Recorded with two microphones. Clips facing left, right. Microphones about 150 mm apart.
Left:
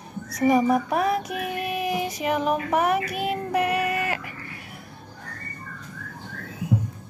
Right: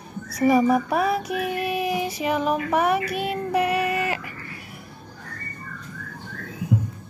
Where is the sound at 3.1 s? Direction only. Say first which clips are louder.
Even; 45° left (ahead or behind).